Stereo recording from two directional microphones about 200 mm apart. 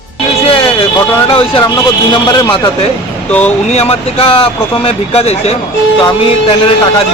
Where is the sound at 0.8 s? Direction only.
25° left (ahead or behind).